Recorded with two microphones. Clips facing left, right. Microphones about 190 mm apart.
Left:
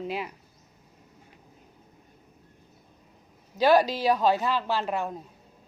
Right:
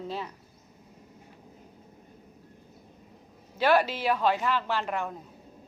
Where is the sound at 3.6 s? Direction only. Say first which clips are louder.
Left 3 dB; 40° left (ahead or behind).